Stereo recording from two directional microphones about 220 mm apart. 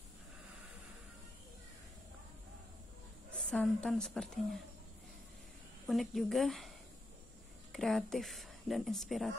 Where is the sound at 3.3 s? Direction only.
5° left (ahead or behind).